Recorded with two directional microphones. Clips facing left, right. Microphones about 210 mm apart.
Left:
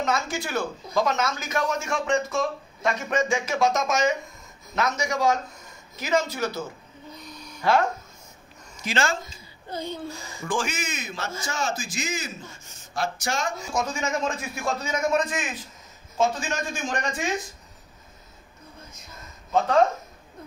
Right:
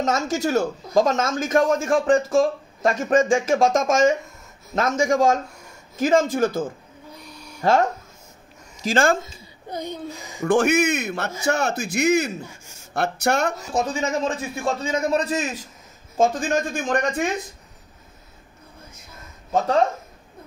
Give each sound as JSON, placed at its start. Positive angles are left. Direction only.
{"t": 0.0, "sound": "speech", "side_deg": -45}
{"t": 7.2, "sound": "a sound", "side_deg": -10}
{"t": 7.6, "sound": "speech", "side_deg": -45}
{"t": 9.2, "sound": "speech", "side_deg": -15}
{"t": 10.4, "sound": "speech", "side_deg": -65}
{"t": 13.7, "sound": "a man's voice", "side_deg": -35}
{"t": 16.2, "sound": "speech", "side_deg": -55}